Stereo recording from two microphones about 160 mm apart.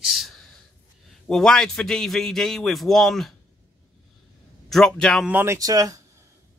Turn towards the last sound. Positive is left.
turn(degrees=-20)  # may be behind; listen again after turning